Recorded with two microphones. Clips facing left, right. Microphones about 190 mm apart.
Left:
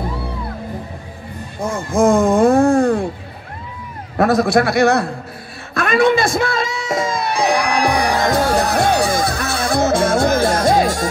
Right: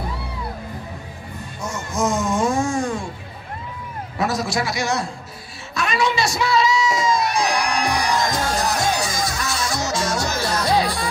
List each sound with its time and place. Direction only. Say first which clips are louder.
1.6 s music: left 8 dB; 55° left (ahead or behind)
4.2 s a man's voice: left 9 dB; 55° left (ahead or behind)
5.8 s music: left 7 dB; 55° left (ahead or behind)